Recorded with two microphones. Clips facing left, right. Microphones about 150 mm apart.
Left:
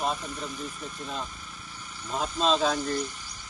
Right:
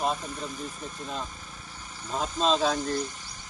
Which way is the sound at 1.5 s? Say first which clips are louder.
Even; 30° right (ahead or behind).